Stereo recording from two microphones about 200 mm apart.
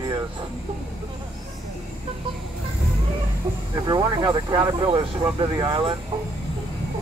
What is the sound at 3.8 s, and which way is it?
Speech, 20° right (ahead or behind).